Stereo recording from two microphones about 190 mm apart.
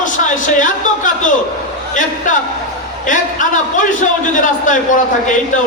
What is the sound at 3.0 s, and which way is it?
A man's voice, 40° left (ahead or behind).